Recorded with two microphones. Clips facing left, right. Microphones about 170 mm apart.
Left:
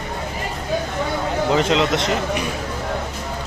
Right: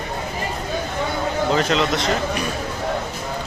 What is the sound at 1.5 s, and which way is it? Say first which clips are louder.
Speech: left 3 dB; 20° left (ahead or behind).